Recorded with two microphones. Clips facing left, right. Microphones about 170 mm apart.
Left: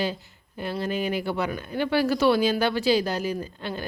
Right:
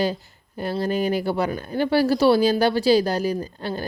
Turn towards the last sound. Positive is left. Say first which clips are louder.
# right 4 dB
turn(degrees=-35)  # may be behind; listen again after turning